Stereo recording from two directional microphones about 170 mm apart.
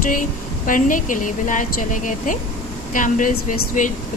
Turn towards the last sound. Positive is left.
turn(degrees=50)  # may be behind; listen again after turning